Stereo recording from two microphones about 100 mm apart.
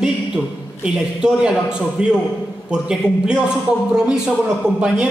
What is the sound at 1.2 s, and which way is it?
A man's voice, 10° right (ahead or behind).